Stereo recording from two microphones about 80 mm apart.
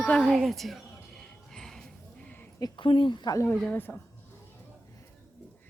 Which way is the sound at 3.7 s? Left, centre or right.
Left.